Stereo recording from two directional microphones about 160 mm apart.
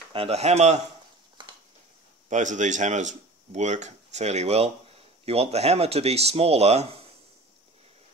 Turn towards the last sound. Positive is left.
turn(degrees=-40)  # may be behind; listen again after turning